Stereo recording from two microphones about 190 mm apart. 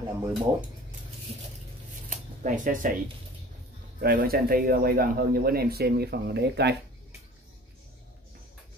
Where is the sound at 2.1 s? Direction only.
40° right (ahead or behind).